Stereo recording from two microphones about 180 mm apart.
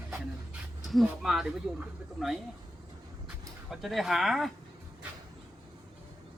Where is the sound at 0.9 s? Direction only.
Centre (ahead or behind).